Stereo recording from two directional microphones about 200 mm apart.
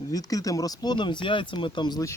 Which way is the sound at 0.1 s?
15° left (ahead or behind).